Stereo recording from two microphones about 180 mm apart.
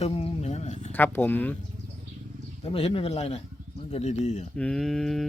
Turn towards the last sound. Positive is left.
turn(degrees=0)  # may be behind; listen again after turning